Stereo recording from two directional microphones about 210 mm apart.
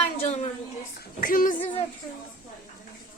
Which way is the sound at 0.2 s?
30° left (ahead or behind).